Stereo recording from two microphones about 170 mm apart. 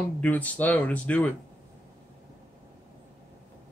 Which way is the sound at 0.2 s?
10° left (ahead or behind).